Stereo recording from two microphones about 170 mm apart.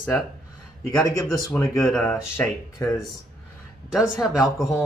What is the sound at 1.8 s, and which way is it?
Speech, 5° left (ahead or behind).